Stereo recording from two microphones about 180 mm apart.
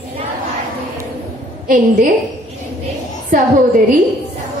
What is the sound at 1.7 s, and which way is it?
Speech, 50° right (ahead or behind).